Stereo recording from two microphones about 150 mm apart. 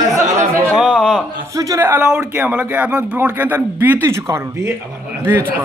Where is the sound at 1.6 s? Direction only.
20° right (ahead or behind).